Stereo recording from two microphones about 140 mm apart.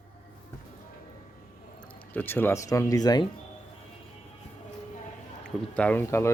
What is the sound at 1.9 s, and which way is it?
Speech, 15° left (ahead or behind).